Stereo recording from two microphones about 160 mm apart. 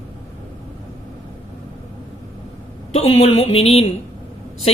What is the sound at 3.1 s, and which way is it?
Speech, 40° left (ahead or behind).